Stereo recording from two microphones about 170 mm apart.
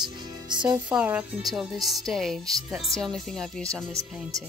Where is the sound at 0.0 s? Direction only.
25° right (ahead or behind).